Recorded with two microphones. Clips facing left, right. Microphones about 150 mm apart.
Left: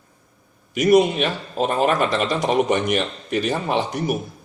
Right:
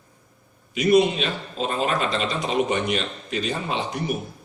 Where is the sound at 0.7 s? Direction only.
45° left (ahead or behind).